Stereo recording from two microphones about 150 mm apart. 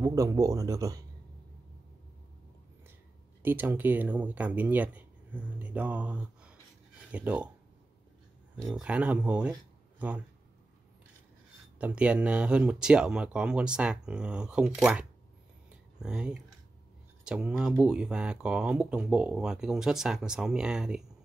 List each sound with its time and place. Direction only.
0.0 s speech: 20° right (ahead or behind)
3.4 s speech: 15° right (ahead or behind)
8.5 s speech: centre (ahead or behind)
11.8 s speech: 10° right (ahead or behind)
15.7 s a sound: 5° right (ahead or behind)
17.2 s speech: 5° right (ahead or behind)